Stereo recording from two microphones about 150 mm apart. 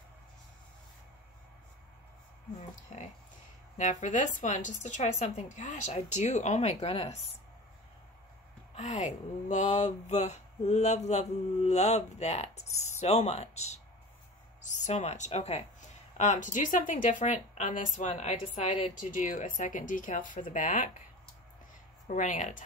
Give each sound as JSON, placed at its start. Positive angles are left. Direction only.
{"t": 2.9, "sound": "speech", "side_deg": 50}
{"t": 8.7, "sound": "speech", "side_deg": 50}
{"t": 22.0, "sound": "speech", "side_deg": 55}